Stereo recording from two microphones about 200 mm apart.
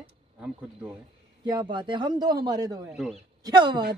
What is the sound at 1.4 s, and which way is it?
A man's voice, 20° right (ahead or behind).